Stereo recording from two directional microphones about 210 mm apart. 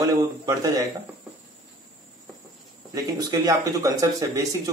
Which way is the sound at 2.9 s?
15° right (ahead or behind).